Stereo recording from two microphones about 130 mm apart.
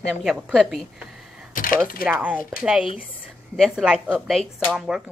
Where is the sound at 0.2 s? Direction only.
Centre (ahead or behind).